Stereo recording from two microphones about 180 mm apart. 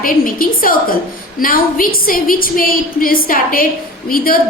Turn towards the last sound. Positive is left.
turn(degrees=55)  # may be behind; listen again after turning